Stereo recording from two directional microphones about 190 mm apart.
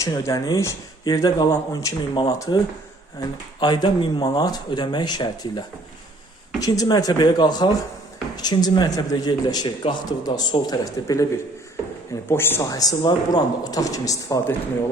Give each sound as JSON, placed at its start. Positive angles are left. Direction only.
{"t": 0.0, "sound": "a man's voice", "side_deg": 15}
{"t": 12.3, "sound": "speech", "side_deg": 10}